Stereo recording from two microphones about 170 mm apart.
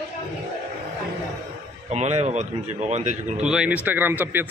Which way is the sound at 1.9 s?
40° right (ahead or behind).